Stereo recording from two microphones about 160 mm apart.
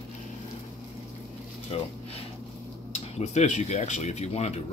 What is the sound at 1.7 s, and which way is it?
Speech, 35° left (ahead or behind).